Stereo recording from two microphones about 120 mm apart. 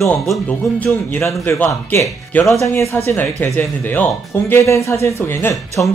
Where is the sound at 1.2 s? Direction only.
25° left (ahead or behind).